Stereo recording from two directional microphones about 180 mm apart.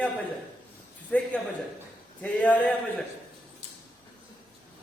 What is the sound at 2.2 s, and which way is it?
Speech, 10° left (ahead or behind).